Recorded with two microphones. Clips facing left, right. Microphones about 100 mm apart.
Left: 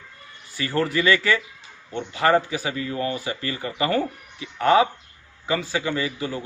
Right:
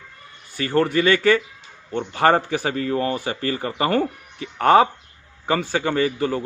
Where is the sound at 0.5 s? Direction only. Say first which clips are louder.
Right 4 dB; 50° right (ahead or behind).